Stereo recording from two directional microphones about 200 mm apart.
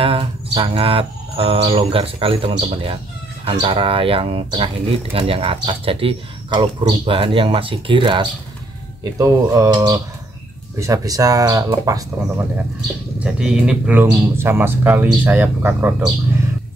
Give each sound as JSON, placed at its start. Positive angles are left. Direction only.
{"t": 0.0, "sound": "a man's voice", "side_deg": -25}
{"t": 13.2, "sound": "a man's voice", "side_deg": -5}